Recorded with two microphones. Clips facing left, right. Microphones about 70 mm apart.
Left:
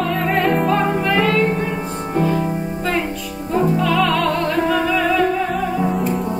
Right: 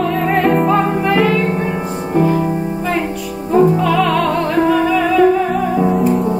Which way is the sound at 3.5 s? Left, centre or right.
Centre.